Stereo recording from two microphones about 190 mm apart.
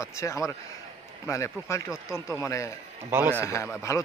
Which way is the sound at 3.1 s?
10° right (ahead or behind).